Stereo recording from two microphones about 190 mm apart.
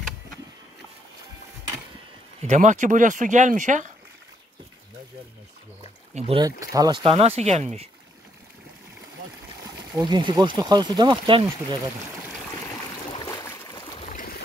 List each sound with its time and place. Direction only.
2.4 s speech: 40° right (ahead or behind)
6.1 s speech: 30° right (ahead or behind)
6.7 s speech: 20° right (ahead or behind)
9.7 s speech: 20° right (ahead or behind)
13.1 s a sound: 20° left (ahead or behind)
13.9 s a sound: 45° left (ahead or behind)